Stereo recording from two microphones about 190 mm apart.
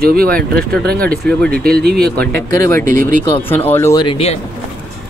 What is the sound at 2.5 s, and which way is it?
Speech, 15° left (ahead or behind).